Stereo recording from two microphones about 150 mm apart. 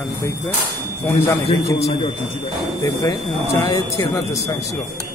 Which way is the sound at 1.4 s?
35° left (ahead or behind).